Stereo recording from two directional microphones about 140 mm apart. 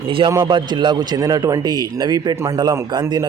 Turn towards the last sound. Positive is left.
turn(degrees=-30)  # may be behind; listen again after turning